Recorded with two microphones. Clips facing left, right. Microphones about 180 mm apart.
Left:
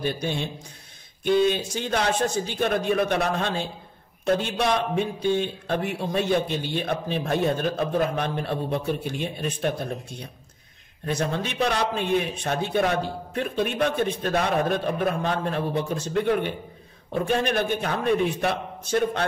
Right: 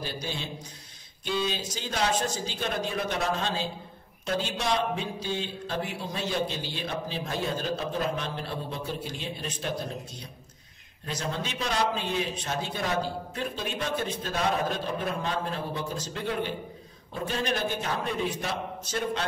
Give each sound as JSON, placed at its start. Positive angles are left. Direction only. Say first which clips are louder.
{"t": 0.0, "sound": "speech", "louder": "left 7 dB", "side_deg": 60}
{"t": 11.1, "sound": "speech", "louder": "left 6 dB", "side_deg": 55}